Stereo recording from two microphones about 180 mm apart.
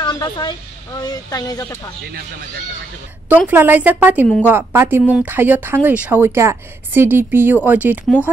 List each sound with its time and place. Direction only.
0.0 s a woman's voice: 25° left (ahead or behind)
3.4 s speech: 10° right (ahead or behind)